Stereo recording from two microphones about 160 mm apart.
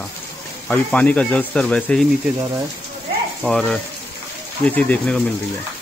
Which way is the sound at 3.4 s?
5° left (ahead or behind).